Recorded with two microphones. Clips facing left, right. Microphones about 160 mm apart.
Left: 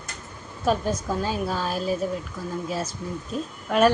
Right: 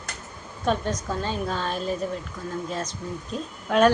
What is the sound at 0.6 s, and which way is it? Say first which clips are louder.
A woman's voice: left 2 dB; 5° left (ahead or behind).